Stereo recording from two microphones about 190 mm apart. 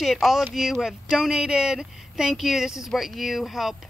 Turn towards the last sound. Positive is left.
turn(degrees=0)  # may be behind; listen again after turning